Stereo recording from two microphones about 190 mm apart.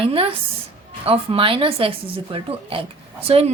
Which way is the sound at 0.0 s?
30° right (ahead or behind).